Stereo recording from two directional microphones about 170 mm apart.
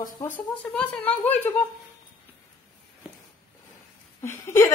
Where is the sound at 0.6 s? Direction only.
5° left (ahead or behind).